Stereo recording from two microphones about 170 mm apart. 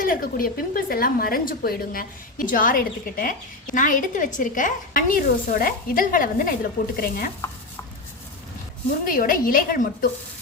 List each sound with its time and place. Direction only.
0.0 s a woman's voice: 55° left (ahead or behind)
9.0 s a woman's voice: 55° left (ahead or behind)